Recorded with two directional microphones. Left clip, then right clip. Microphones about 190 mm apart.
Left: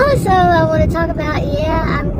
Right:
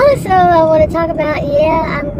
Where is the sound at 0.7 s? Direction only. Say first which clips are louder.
Right 5 dB; 30° right (ahead or behind).